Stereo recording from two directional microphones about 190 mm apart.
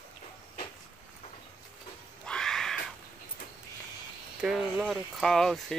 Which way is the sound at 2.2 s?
5° left (ahead or behind).